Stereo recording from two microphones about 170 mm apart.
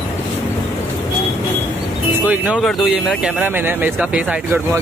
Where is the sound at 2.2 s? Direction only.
10° right (ahead or behind).